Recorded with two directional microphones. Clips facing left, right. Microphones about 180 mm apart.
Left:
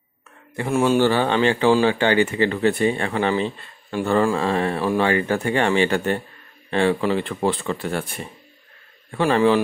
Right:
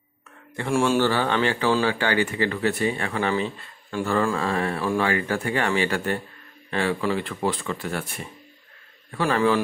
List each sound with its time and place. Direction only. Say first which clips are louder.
0.7 s speech: left 2 dB; 5° left (ahead or behind)
0.9 s speech: left 4 dB; 20° left (ahead or behind)
9.1 s speech: left 4 dB; 25° left (ahead or behind)